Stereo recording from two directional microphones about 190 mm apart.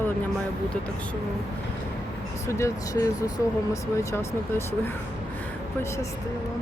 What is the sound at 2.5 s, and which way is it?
Speech, 15° left (ahead or behind).